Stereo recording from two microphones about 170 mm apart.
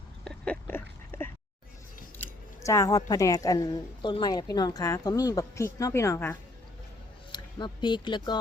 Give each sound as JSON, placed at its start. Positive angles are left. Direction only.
{"t": 0.3, "sound": "a sound", "side_deg": 5}
{"t": 2.6, "sound": "a woman's voice", "side_deg": 20}
{"t": 7.3, "sound": "speech", "side_deg": 25}